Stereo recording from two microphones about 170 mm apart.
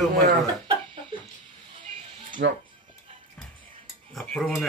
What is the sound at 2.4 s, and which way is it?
Speech, 90° right.